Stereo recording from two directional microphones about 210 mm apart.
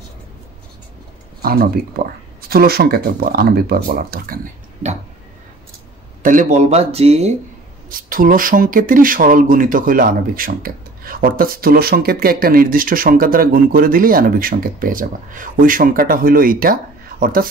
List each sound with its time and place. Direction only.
1.4 s speech: 45° right (ahead or behind)
6.2 s speech: 35° right (ahead or behind)
7.9 s speech: 40° right (ahead or behind)